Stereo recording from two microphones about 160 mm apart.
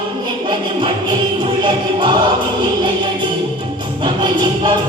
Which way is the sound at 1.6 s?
30° right (ahead or behind).